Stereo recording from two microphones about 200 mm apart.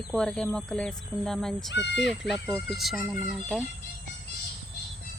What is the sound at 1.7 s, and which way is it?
Speech, 60° left (ahead or behind).